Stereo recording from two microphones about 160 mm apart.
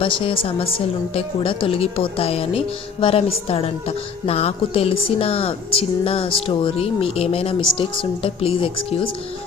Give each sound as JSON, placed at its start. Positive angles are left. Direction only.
{"t": 0.0, "sound": "speech", "side_deg": 35}